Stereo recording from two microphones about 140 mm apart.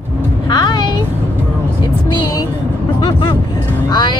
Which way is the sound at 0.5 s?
30° left (ahead or behind).